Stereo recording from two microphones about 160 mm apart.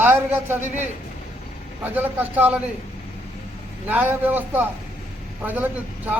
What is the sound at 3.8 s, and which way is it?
A man's voice, 10° right (ahead or behind).